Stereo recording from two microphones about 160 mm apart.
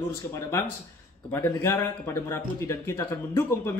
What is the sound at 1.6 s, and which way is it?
A man's voice, 15° left (ahead or behind).